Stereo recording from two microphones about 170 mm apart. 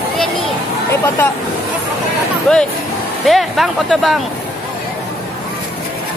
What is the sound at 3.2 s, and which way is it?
Speech, centre (ahead or behind).